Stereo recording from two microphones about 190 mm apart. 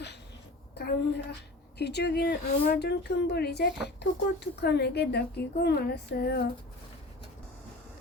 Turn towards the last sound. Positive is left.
turn(degrees=60)  # may be behind; listen again after turning